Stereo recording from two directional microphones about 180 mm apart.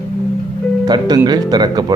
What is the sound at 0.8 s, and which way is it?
Speech, 20° right (ahead or behind).